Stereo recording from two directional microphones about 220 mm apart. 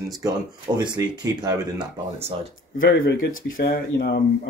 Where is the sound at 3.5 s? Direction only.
45° left (ahead or behind).